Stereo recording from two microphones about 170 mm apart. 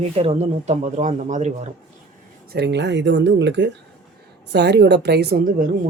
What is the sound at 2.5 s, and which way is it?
A woman's voice, 85° right.